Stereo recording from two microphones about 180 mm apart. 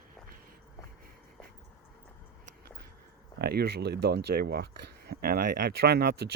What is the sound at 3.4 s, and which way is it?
Speech, 60° right (ahead or behind).